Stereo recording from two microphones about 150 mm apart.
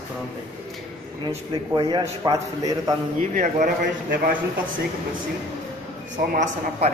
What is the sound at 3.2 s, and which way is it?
Speech, 55° right (ahead or behind).